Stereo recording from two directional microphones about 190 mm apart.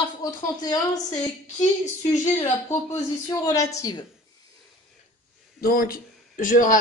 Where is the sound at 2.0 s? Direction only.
15° left (ahead or behind).